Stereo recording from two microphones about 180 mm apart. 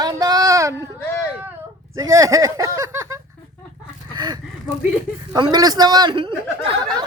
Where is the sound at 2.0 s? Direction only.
15° right (ahead or behind).